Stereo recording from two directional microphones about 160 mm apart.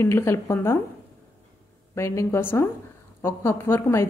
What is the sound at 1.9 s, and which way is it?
Speech, 15° left (ahead or behind).